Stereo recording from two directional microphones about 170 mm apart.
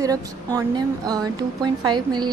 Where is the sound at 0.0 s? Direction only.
20° right (ahead or behind).